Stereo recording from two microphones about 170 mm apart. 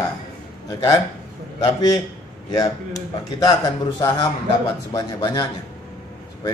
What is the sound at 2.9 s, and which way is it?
Speech, 20° left (ahead or behind).